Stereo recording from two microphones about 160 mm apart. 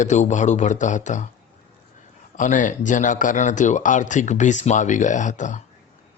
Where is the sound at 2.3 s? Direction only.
55° left (ahead or behind).